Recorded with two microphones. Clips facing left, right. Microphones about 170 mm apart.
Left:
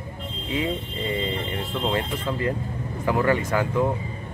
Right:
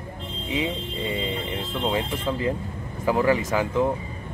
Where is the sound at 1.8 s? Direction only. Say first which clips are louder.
Right 1 dB; 15° right (ahead or behind).